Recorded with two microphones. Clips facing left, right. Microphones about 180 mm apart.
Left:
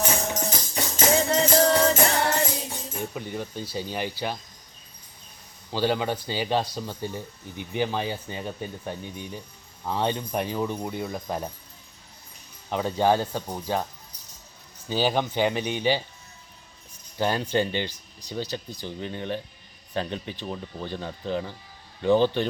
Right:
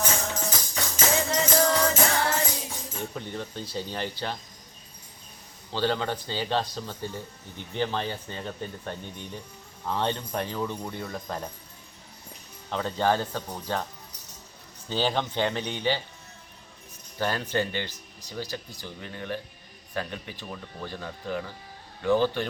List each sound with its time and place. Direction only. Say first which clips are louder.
0.3 s music: left 3 dB; 20° left (ahead or behind)
3.2 s speech: left 2 dB; 10° left (ahead or behind)
5.7 s speech: left 2 dB; 10° left (ahead or behind)
12.7 s speech: left 3 dB; 15° left (ahead or behind)
14.8 s speech: left 3 dB; 10° left (ahead or behind)
17.2 s speech: left 3 dB; 15° left (ahead or behind)